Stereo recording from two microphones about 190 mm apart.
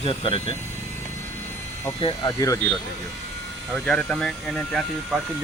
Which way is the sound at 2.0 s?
25° left (ahead or behind).